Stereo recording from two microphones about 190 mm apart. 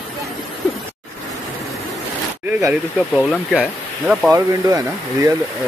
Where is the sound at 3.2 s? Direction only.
5° right (ahead or behind).